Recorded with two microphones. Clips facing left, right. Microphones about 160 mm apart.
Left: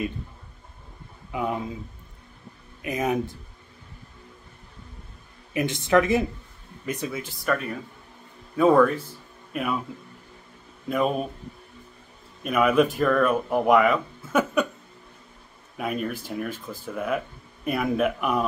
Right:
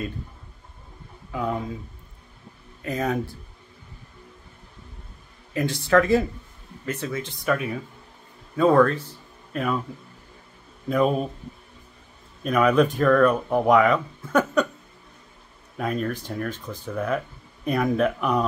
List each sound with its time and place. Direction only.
1.3 s speech: 20° left (ahead or behind)
2.8 s speech: 15° left (ahead or behind)
5.5 s speech: 20° left (ahead or behind)
7.4 s speech: 5° right (ahead or behind)
12.4 s speech: 5° left (ahead or behind)
15.8 s speech: 10° left (ahead or behind)